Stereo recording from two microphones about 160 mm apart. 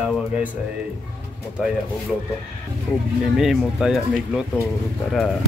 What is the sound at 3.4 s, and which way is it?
Speech, 5° right (ahead or behind).